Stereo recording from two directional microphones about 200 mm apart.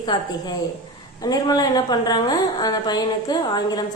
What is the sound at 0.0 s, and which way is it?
A woman's voice, 20° left (ahead or behind).